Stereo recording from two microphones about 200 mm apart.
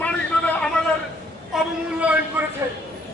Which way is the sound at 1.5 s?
5° right (ahead or behind).